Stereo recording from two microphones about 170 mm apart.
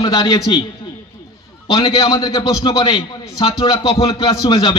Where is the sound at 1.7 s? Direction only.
30° left (ahead or behind).